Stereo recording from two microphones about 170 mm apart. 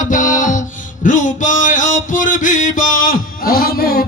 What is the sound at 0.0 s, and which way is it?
Music, 50° left (ahead or behind).